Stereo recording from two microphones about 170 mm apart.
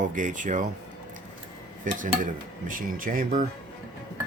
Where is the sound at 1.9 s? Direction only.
50° right (ahead or behind).